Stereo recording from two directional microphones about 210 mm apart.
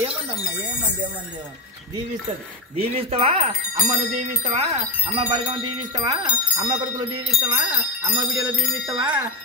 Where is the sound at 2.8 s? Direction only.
30° right (ahead or behind).